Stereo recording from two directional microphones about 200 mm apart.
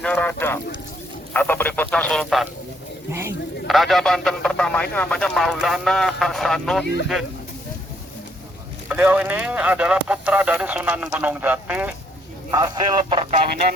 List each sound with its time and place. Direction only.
0.0 s clip-clop: 5° left (ahead or behind)
1.3 s a sound: 10° left (ahead or behind)
3.1 s a sound: 10° right (ahead or behind)
3.7 s speech: centre (ahead or behind)
8.9 s speech: 5° right (ahead or behind)
12.5 s speech: 20° right (ahead or behind)